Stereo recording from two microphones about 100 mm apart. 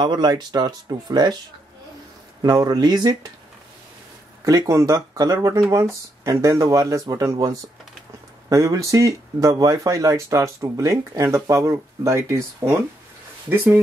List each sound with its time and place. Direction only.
0.0 s speech: 45° right (ahead or behind)
2.4 s speech: 40° right (ahead or behind)
4.5 s speech: 30° right (ahead or behind)
8.5 s speech: 35° right (ahead or behind)
13.5 s speech: 20° right (ahead or behind)